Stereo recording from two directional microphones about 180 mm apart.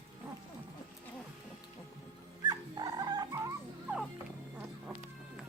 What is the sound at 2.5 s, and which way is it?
Dog, 20° right (ahead or behind).